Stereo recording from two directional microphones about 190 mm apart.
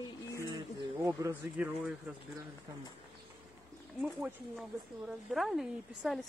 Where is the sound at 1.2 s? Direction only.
15° right (ahead or behind).